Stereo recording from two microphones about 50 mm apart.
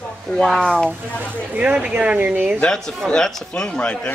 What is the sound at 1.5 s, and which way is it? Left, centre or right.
Speech, right.